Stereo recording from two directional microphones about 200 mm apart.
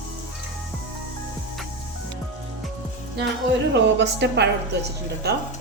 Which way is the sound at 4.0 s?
60° right (ahead or behind).